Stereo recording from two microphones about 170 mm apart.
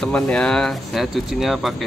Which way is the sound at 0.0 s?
5° left (ahead or behind).